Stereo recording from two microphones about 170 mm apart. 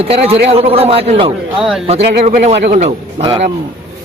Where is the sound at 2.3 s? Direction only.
40° right (ahead or behind).